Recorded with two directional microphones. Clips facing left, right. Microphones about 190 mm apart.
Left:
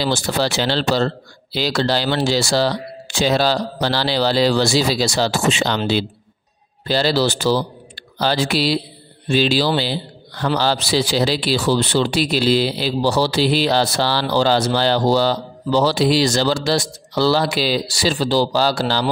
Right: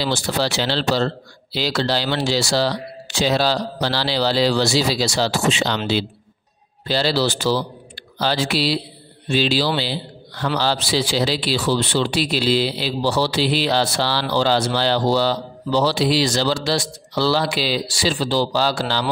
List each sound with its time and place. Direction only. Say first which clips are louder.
0.0 s a man's voice: left 2 dB; 50° left (ahead or behind)